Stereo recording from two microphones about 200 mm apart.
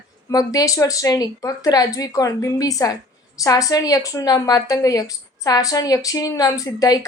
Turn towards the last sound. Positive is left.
turn(degrees=20)  # may be behind; listen again after turning